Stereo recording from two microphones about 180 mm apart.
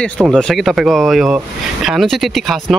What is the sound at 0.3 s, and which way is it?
Speech, 5° left (ahead or behind).